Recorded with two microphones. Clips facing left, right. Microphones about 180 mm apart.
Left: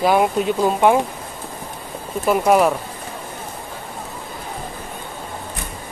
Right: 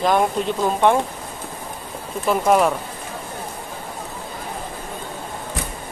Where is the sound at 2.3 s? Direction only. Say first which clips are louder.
Left 2 dB; 5° left (ahead or behind).